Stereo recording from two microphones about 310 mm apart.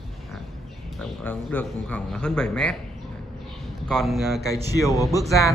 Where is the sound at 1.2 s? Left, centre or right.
Centre.